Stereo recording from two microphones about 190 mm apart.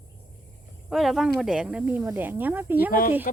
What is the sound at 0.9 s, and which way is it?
Speech, centre (ahead or behind).